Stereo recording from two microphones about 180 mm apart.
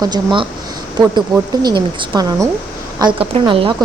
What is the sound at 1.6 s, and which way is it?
A woman's voice, 25° right (ahead or behind).